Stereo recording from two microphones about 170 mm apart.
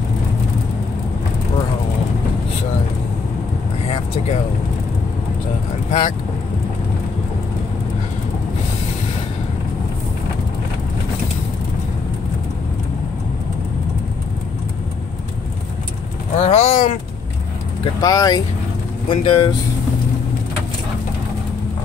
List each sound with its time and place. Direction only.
5.9 s speech: 45° left (ahead or behind)
16.3 s speech: 40° left (ahead or behind)
18.0 s speech: 20° left (ahead or behind)
19.0 s speech: 30° left (ahead or behind)